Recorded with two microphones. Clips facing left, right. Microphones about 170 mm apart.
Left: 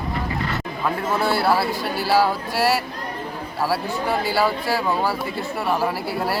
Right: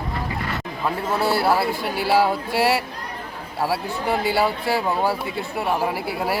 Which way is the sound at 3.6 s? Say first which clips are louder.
Left 1 dB; 25° right (ahead or behind).